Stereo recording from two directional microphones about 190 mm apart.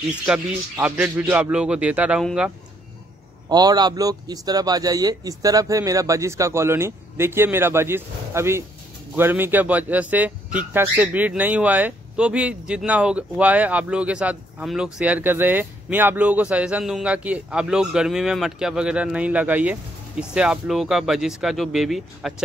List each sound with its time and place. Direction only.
0.2 s speech: 5° right (ahead or behind)
3.4 s speech: 20° right (ahead or behind); by 22.3 s centre (ahead or behind)